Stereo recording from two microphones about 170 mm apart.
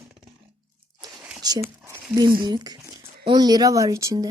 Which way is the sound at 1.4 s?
20° right (ahead or behind).